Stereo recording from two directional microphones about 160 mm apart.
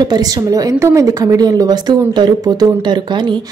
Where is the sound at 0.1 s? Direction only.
25° right (ahead or behind).